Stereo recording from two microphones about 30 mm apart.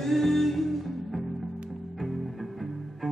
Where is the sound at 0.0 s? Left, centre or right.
Centre.